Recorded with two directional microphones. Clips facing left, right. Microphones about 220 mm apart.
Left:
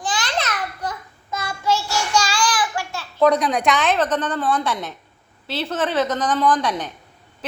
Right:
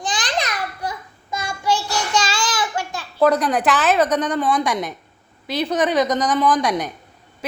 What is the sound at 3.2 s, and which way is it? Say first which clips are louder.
A woman's voice: even; centre (ahead or behind).